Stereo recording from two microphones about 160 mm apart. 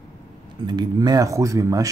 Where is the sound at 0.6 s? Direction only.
25° right (ahead or behind).